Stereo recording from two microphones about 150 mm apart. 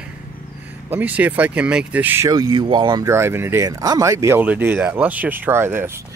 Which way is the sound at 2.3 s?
30° right (ahead or behind).